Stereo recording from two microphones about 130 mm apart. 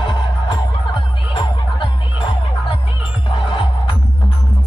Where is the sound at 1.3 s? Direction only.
40° left (ahead or behind).